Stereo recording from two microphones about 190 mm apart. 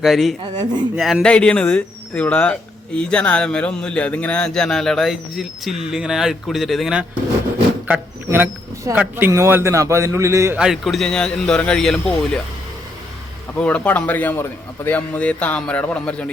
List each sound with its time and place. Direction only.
0.0 s speech: centre (ahead or behind)
0.5 s speech: 25° right (ahead or behind)
0.9 s speech: centre (ahead or behind)
10.6 s speech: centre (ahead or behind)
13.6 s speech: 5° left (ahead or behind)